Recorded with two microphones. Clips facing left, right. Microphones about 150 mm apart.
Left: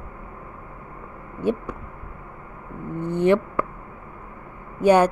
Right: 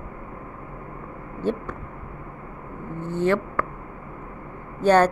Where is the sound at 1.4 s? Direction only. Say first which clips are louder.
Left 2 dB; 10° left (ahead or behind).